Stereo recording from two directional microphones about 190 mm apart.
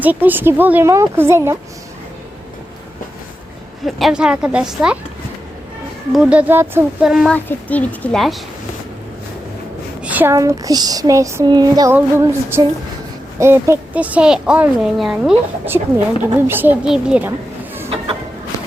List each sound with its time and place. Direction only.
0.0 s speech: 10° right (ahead or behind)
3.8 s speech: centre (ahead or behind)
6.1 s speech: 5° right (ahead or behind)
7.3 s speech: 10° left (ahead or behind)
10.0 s speech: 10° right (ahead or behind)